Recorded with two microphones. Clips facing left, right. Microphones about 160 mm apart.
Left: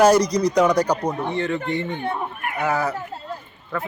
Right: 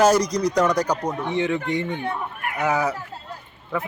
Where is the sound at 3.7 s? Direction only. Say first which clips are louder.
Right 1 dB; 15° right (ahead or behind).